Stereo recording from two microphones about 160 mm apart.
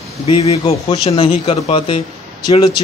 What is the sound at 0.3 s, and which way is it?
A man's voice, 40° left (ahead or behind).